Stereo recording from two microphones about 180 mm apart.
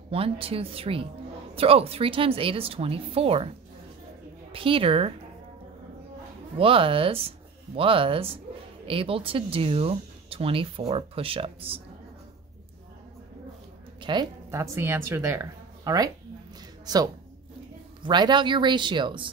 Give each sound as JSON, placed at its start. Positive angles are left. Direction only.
{"t": 0.1, "sound": "speech", "side_deg": -30}
{"t": 4.5, "sound": "speech", "side_deg": -30}
{"t": 6.6, "sound": "speech", "side_deg": -30}
{"t": 14.1, "sound": "speech", "side_deg": -25}
{"t": 14.5, "sound": "a woman's voice", "side_deg": -15}